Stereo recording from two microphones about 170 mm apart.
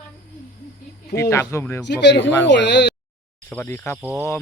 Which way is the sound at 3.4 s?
10° left (ahead or behind).